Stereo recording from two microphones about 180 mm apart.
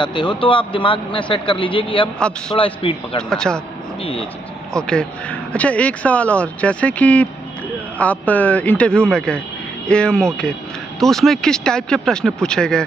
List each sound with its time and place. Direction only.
0.0 s a man's voice: 25° left (ahead or behind)
3.2 s speech: 5° left (ahead or behind)
4.0 s speech: 30° left (ahead or behind)
4.7 s speech: 5° left (ahead or behind)